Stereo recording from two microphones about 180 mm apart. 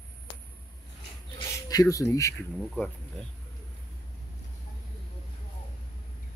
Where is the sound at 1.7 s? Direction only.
20° left (ahead or behind).